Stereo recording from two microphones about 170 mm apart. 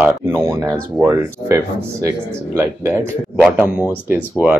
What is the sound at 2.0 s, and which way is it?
A man's voice, 15° right (ahead or behind).